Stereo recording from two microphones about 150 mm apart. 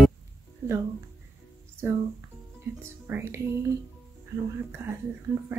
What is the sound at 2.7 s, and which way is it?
Music, 15° right (ahead or behind).